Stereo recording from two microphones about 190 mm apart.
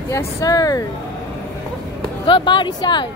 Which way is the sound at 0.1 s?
15° left (ahead or behind).